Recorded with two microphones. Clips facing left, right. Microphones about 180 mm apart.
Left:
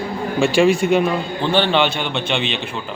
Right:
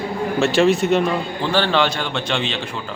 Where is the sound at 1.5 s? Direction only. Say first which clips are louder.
Left 1 dB; 25° left (ahead or behind).